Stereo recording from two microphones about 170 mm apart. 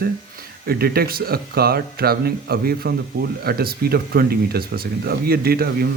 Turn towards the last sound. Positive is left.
turn(degrees=-65)  # may be behind; listen again after turning